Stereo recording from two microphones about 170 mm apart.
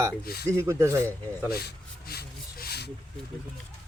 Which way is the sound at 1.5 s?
65° left (ahead or behind).